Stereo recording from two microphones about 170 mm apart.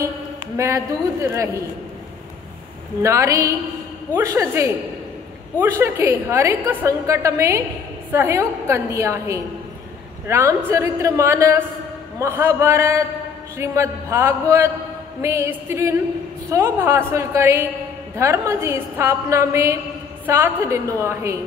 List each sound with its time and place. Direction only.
0.6 s a woman's voice: 15° right (ahead or behind)
3.0 s a woman's voice: 15° right (ahead or behind)